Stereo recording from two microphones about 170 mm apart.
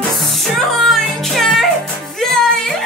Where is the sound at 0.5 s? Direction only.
Centre (ahead or behind).